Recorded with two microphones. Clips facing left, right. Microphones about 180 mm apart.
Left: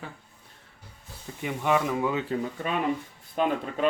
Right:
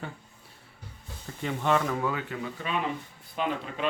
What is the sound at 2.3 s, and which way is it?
Speech, 45° left (ahead or behind).